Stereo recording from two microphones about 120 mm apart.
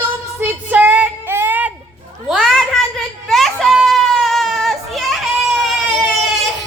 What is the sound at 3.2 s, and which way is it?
Children playing, centre (ahead or behind).